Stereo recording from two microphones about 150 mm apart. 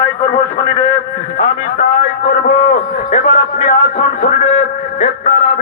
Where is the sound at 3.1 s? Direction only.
55° left (ahead or behind).